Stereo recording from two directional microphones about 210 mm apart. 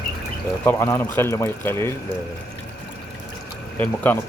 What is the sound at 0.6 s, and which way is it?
Speech, 10° left (ahead or behind).